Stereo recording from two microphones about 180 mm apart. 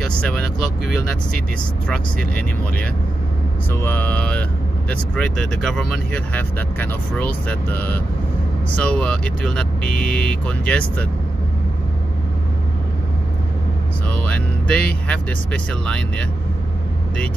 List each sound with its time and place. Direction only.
0.0 s speech: 5° left (ahead or behind)
1.9 s speech: 5° left (ahead or behind)
14.2 s speech: 5° left (ahead or behind)